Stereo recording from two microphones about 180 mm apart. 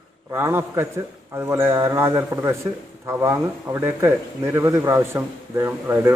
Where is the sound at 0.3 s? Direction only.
10° right (ahead or behind).